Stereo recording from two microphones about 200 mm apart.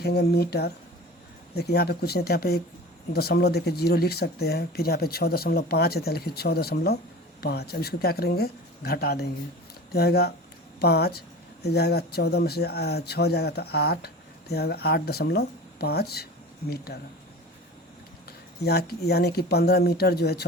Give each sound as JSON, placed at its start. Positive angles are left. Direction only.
{"t": 0.0, "sound": "a woman's voice", "side_deg": 55}
{"t": 18.3, "sound": "speech", "side_deg": 50}